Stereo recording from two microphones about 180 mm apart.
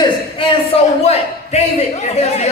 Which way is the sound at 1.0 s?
35° left (ahead or behind).